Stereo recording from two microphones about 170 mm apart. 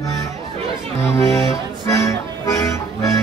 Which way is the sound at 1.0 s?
15° left (ahead or behind).